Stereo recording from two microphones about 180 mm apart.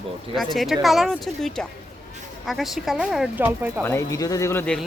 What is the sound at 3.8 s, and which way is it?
Speech, 15° left (ahead or behind).